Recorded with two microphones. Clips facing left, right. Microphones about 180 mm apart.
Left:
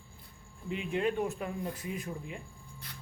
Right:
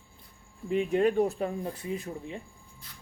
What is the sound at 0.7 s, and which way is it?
Speech, 40° right (ahead or behind).